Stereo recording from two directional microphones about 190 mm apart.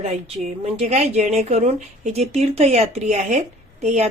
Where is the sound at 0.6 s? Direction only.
35° right (ahead or behind).